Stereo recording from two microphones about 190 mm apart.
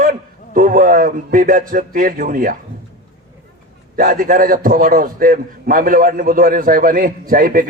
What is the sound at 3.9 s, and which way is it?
A man's voice, 45° right (ahead or behind).